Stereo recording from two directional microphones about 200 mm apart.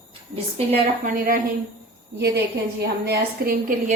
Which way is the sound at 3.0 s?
50° right (ahead or behind).